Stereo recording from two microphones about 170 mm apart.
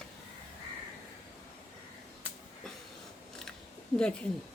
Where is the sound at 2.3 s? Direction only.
10° right (ahead or behind).